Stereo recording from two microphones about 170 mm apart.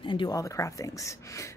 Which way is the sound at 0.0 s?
30° left (ahead or behind).